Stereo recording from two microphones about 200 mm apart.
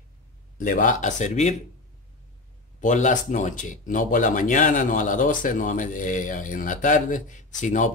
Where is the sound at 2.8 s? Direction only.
40° left (ahead or behind).